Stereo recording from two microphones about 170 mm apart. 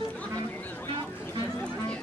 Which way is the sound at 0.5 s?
10° left (ahead or behind).